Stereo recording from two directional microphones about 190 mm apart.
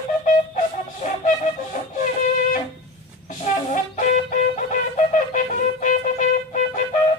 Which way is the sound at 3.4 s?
40° left (ahead or behind).